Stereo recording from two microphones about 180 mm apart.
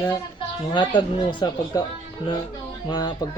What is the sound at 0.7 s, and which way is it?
Speech, 25° left (ahead or behind).